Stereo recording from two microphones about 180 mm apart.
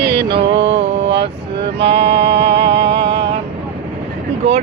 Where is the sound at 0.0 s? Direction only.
65° right (ahead or behind).